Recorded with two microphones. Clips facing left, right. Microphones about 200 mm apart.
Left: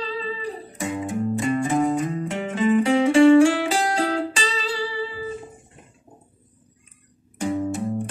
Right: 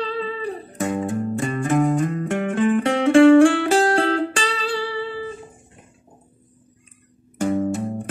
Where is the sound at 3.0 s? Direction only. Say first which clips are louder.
Right 3 dB; 65° right (ahead or behind).